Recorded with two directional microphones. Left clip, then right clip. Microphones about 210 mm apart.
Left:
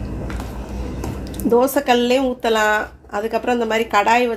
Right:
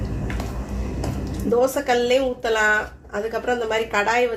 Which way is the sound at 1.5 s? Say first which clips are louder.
Left 4 dB; 50° left (ahead or behind).